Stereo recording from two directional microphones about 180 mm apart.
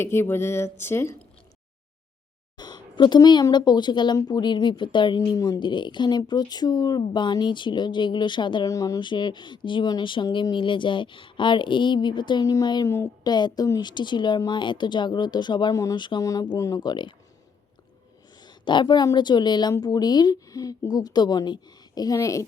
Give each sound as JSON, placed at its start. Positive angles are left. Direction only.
{"t": 0.0, "sound": "a woman's voice", "side_deg": 15}
{"t": 2.6, "sound": "speech", "side_deg": 25}
{"t": 18.3, "sound": "speech", "side_deg": 25}